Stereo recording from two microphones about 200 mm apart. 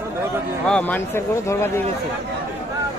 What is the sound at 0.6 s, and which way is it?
Speech, 5° left (ahead or behind).